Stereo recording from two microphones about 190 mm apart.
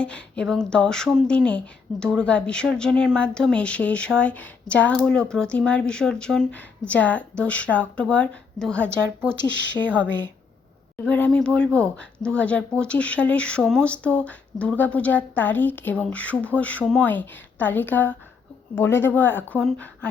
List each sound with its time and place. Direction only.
0.0 s speech: 5° left (ahead or behind)
10.0 s a woman's voice: 70° left (ahead or behind)
11.0 s speech: 5° left (ahead or behind)